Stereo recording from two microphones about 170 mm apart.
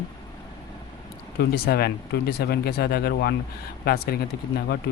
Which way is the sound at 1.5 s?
65° left (ahead or behind).